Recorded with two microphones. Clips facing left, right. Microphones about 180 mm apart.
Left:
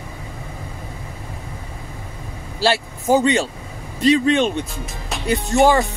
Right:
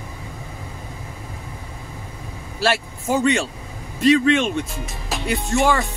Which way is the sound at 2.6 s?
35° left (ahead or behind).